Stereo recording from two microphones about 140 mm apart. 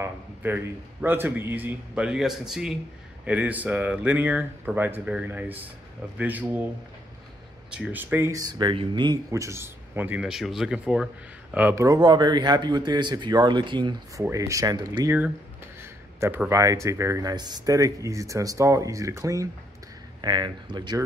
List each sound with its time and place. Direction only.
0.0 s a man's voice: 15° right (ahead or behind)
7.7 s speech: 10° right (ahead or behind)
11.5 s speech: 15° right (ahead or behind)
12.0 s a man's voice: 30° right (ahead or behind)
14.3 s speech: 25° right (ahead or behind)
15.8 s a man's voice: 15° right (ahead or behind); by 21.0 s 30° right (ahead or behind)